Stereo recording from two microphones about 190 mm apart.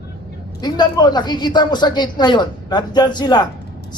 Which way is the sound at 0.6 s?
20° left (ahead or behind).